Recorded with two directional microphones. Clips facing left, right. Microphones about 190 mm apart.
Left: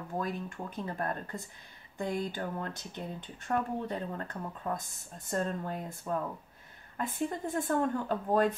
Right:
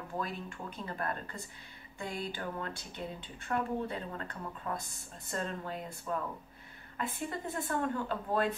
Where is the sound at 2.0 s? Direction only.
45° left (ahead or behind).